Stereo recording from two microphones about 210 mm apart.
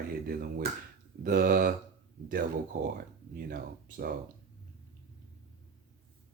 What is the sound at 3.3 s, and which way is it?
Speech, 45° right (ahead or behind).